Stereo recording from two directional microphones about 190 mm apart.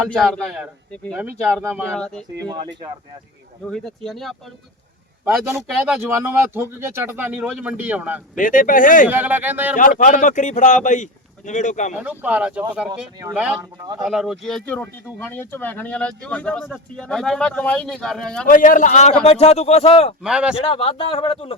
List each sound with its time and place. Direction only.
0.1 s speech: 5° left (ahead or behind)
3.7 s speech: 5° left (ahead or behind)
6.1 s speech: 15° right (ahead or behind)
8.4 s speech: 45° left (ahead or behind)
9.0 s speech: 10° right (ahead or behind)
9.7 s speech: 45° left (ahead or behind)
12.0 s speech: 5° right (ahead or behind)
18.4 s speech: 45° left (ahead or behind)
20.2 s speech: 5° right (ahead or behind)
20.7 s speech: 30° left (ahead or behind)